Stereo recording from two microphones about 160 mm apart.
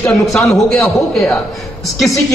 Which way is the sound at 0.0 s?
5° left (ahead or behind).